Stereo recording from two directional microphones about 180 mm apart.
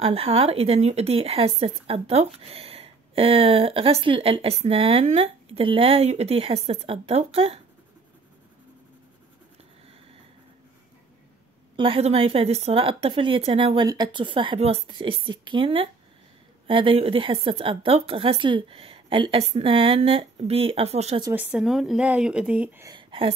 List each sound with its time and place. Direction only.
0.0 s speech: 30° right (ahead or behind)
11.7 s speech: 30° right (ahead or behind)
21.2 s speech: 10° right (ahead or behind)
22.9 s a sound: 30° right (ahead or behind)